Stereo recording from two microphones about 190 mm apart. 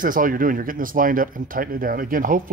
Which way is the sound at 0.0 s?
45° right (ahead or behind).